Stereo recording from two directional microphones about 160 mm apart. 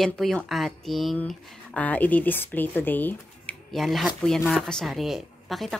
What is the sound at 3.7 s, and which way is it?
A woman's voice, centre (ahead or behind).